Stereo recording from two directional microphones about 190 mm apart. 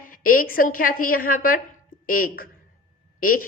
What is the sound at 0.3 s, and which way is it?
Speech, 50° left (ahead or behind).